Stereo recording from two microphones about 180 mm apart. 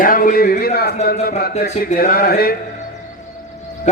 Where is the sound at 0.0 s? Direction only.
50° left (ahead or behind).